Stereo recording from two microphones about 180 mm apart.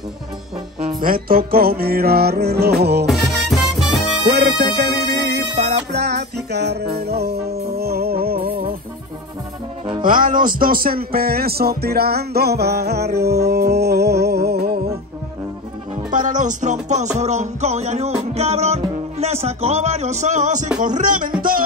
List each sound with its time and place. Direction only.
0.8 s speech: 50° right (ahead or behind)
3.1 s music: centre (ahead or behind)
4.3 s music: 70° right (ahead or behind)
10.0 s speech: 50° right (ahead or behind)
16.1 s music: 45° right (ahead or behind)